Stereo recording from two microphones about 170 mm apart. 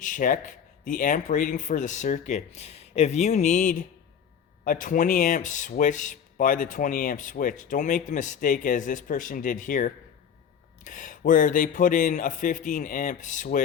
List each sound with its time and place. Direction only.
0.0 s speech: 50° left (ahead or behind)